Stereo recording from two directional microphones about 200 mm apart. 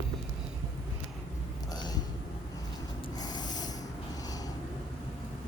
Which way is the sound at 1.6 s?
20° left (ahead or behind).